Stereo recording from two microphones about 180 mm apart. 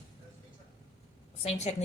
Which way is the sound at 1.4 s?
40° left (ahead or behind).